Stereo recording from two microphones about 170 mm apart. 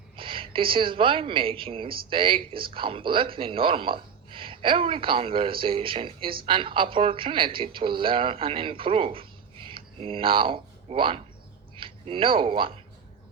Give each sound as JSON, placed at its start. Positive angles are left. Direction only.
{"t": 0.2, "sound": "a woman's voice", "side_deg": -30}